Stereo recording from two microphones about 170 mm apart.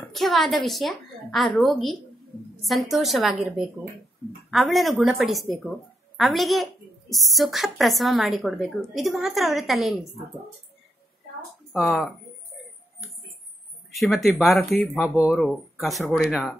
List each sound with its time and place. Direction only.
0.1 s a woman's voice: centre (ahead or behind)
11.7 s a woman's voice: centre (ahead or behind)
13.9 s a woman's voice: centre (ahead or behind)